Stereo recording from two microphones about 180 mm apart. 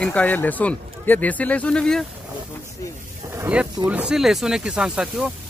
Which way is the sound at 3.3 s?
10° right (ahead or behind).